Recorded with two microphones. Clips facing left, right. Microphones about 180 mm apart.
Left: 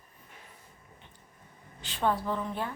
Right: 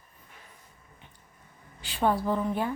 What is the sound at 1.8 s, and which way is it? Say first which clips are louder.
Speech: right 3 dB; 10° right (ahead or behind).